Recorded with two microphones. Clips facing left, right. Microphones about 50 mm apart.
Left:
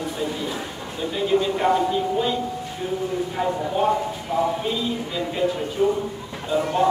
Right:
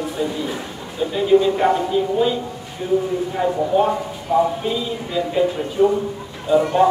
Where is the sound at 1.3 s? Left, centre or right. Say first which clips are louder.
Right 7 dB; centre.